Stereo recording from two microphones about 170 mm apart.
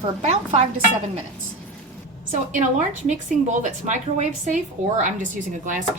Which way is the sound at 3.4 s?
45° right (ahead or behind).